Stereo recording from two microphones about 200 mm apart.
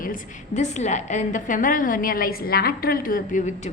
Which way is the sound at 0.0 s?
40° left (ahead or behind).